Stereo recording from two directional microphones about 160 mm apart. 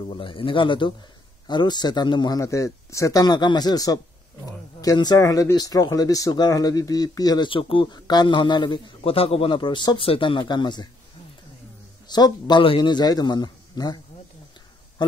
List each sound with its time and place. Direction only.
0.1 s a man's voice: 30° left (ahead or behind)
12.1 s speech: 25° left (ahead or behind)
15.0 s honk: 30° left (ahead or behind)